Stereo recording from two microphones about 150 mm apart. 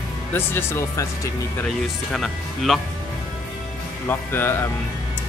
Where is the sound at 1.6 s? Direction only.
Centre (ahead or behind).